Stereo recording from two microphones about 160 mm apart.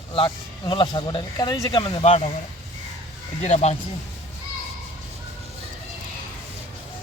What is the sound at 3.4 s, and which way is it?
Speech, 45° left (ahead or behind).